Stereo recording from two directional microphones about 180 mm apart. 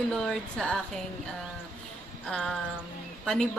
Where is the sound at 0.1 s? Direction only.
5° left (ahead or behind).